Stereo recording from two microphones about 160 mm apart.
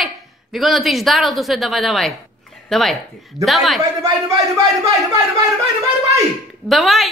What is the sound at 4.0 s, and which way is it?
Speech, 20° right (ahead or behind).